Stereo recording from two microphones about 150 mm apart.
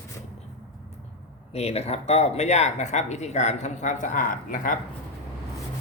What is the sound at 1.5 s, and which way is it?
Speech, 45° left (ahead or behind).